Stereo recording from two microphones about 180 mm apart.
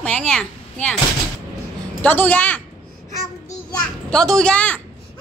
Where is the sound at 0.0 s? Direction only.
5° left (ahead or behind).